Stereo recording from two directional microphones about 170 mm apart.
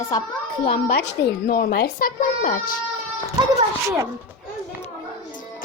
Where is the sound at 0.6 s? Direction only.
35° left (ahead or behind).